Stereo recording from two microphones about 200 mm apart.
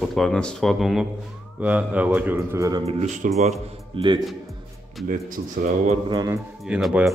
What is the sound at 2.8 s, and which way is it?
Speech, 35° right (ahead or behind).